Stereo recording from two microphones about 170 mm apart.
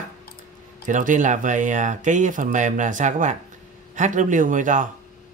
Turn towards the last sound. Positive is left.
turn(degrees=-50)  # may be behind; listen again after turning